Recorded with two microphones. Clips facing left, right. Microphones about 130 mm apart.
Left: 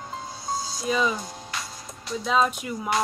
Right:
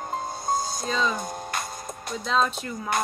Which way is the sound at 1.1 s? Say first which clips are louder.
Right 3 dB; 50° right (ahead or behind).